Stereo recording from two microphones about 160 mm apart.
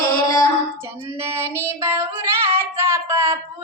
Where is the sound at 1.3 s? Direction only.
15° right (ahead or behind).